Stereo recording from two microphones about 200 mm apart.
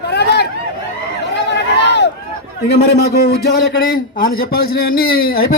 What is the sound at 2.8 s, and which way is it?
Speech, 55° left (ahead or behind).